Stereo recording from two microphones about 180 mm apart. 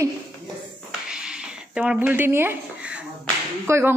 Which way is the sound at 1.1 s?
5° right (ahead or behind).